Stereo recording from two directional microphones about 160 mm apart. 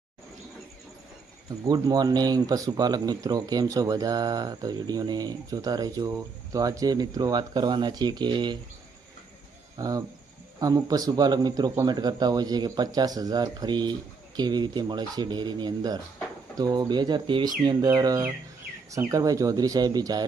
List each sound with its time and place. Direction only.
1.6 s speech: 25° right (ahead or behind)
9.7 s speech: 20° right (ahead or behind)